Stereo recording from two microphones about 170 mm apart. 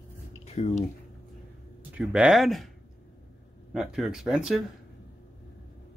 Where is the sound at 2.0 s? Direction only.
5° right (ahead or behind).